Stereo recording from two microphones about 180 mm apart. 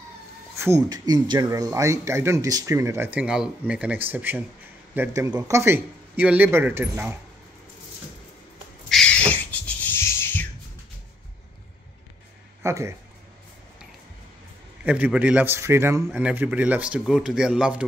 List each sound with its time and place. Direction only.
0.6 s speech: 15° right (ahead or behind)
8.8 s a sound: 5° left (ahead or behind)
12.6 s speech: 15° right (ahead or behind)
14.9 s speech: 10° right (ahead or behind)